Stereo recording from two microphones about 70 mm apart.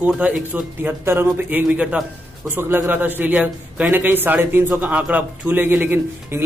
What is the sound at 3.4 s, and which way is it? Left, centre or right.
Speech, centre.